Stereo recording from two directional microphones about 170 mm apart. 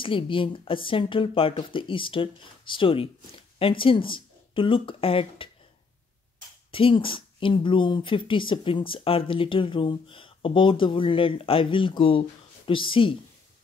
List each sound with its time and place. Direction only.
0.0 s speech: 30° left (ahead or behind)
6.7 s speech: 30° left (ahead or behind)